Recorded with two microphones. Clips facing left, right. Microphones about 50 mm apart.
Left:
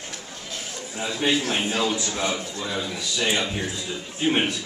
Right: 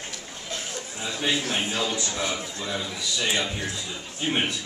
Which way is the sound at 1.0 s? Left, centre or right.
Left.